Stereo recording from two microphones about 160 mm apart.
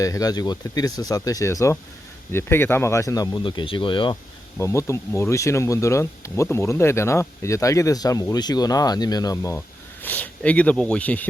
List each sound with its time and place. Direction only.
0.0 s speech: 20° left (ahead or behind)
4.5 s speech: 15° left (ahead or behind)